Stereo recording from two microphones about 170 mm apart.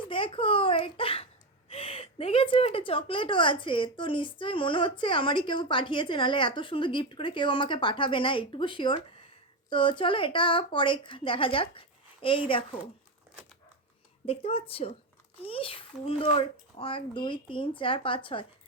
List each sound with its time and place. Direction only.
0.1 s a sound: 30° left (ahead or behind)
1.7 s a woman's voice: 35° left (ahead or behind)
14.3 s a woman's voice: 35° left (ahead or behind)